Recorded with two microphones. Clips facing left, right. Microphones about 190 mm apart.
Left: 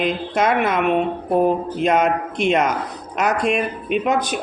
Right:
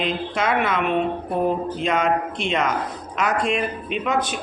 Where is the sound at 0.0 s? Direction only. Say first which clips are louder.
Left 4 dB; 45° left (ahead or behind).